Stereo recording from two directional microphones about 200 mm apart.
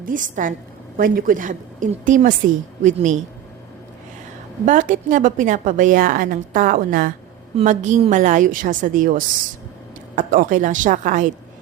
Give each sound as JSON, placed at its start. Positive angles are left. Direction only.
{"t": 0.0, "sound": "a woman's voice", "side_deg": -40}
{"t": 4.6, "sound": "a woman's voice", "side_deg": -40}